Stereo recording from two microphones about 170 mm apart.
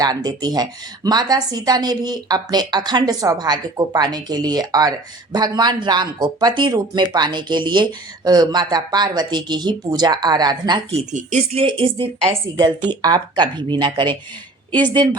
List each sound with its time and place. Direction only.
0.0 s speech: 20° right (ahead or behind)
10.9 s speech: 40° right (ahead or behind); by 15.2 s 25° right (ahead or behind)